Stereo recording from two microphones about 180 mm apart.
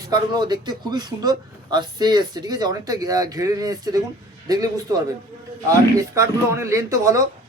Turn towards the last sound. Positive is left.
turn(degrees=-15)  # may be behind; listen again after turning